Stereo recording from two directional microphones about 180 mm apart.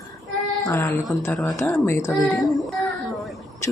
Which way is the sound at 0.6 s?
15° left (ahead or behind).